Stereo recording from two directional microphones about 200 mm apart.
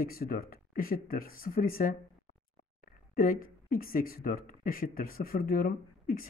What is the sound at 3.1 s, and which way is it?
Speech, 45° left (ahead or behind).